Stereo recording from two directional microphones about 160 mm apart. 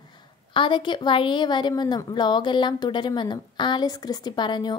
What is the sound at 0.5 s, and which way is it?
A woman's voice, 30° left (ahead or behind).